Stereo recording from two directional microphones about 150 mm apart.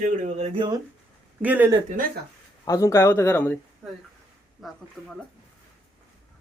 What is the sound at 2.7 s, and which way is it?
Speech, 20° left (ahead or behind).